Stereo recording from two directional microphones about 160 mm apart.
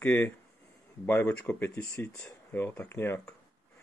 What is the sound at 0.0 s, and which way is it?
Speech, 10° left (ahead or behind).